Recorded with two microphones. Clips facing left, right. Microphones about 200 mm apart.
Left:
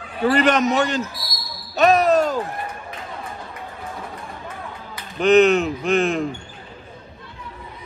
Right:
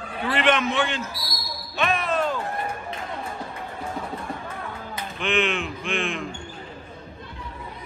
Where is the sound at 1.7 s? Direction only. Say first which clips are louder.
Left 10 dB; 40° left (ahead or behind).